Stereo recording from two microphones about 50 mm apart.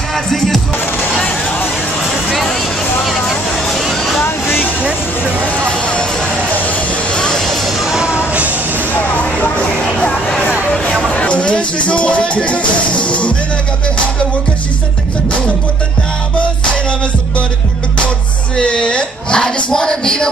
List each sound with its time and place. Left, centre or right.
0.1 s music: centre
3.0 s music: centre
3.9 s a sound: centre
4.2 s music: left
5.6 s music: centre
7.1 s vehicle: centre
7.4 s music: centre
8.9 s a sound: left
9.9 s music: left
18.6 s speech: centre